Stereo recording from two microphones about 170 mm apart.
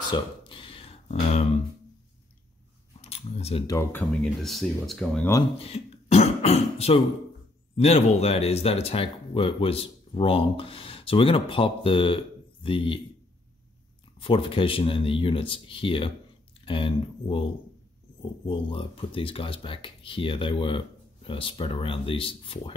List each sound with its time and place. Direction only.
0.1 s a sound: 30° left (ahead or behind)
3.0 s camera: 40° left (ahead or behind)
3.6 s speech: 15° left (ahead or behind)
4.2 s speech: centre (ahead or behind)
5.6 s speech: 40° left (ahead or behind)
14.1 s speech: 30° left (ahead or behind)